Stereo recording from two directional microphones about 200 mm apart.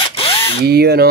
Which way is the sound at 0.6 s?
50° right (ahead or behind).